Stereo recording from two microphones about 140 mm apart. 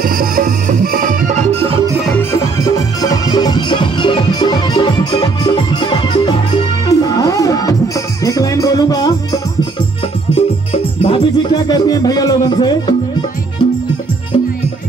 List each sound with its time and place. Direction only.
0.0 s music: 90° right; by 1.8 s 45° right (ahead or behind)
2.1 s music: 20° left (ahead or behind)
10.3 s music: 45° left (ahead or behind)